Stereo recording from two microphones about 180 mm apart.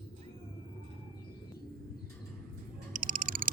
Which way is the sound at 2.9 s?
50° right (ahead or behind).